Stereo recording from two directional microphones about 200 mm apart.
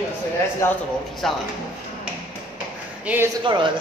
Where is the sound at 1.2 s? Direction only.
Centre (ahead or behind).